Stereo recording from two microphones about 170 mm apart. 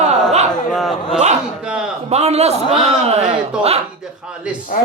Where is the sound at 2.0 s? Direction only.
40° right (ahead or behind).